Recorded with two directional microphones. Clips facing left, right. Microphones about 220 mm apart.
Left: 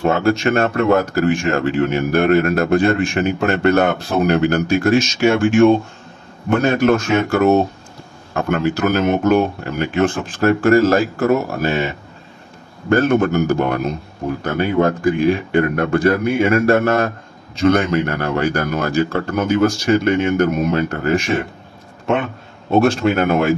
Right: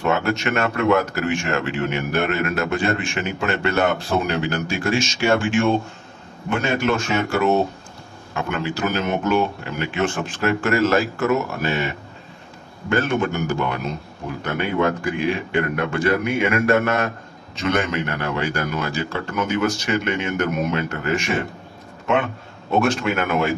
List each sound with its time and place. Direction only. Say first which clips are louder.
0.0 s speech: left 5 dB; 35° left (ahead or behind)
12.9 s speech: left 7 dB; 40° left (ahead or behind)
22.7 s speech: left 5 dB; 35° left (ahead or behind)